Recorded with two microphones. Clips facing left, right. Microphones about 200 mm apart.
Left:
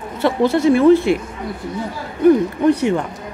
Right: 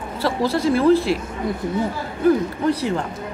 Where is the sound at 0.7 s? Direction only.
30° right (ahead or behind).